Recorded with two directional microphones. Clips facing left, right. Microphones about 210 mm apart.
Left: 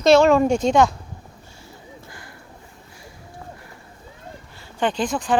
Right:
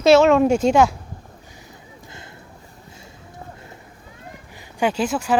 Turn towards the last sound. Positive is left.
turn(degrees=-5)  # may be behind; listen again after turning